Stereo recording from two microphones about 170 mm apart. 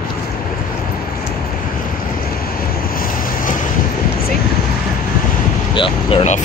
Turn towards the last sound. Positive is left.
turn(degrees=30)  # may be behind; listen again after turning